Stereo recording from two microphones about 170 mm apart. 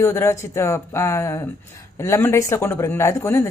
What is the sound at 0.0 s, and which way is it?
A woman's voice, 15° left (ahead or behind).